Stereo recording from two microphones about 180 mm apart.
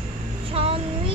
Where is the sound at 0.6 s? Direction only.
30° right (ahead or behind).